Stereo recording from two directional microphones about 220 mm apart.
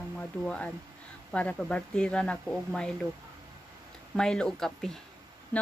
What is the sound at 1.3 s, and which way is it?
Speech, 5° left (ahead or behind).